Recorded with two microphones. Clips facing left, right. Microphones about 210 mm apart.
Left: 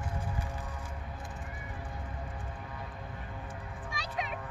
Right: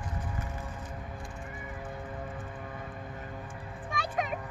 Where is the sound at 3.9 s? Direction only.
50° right (ahead or behind).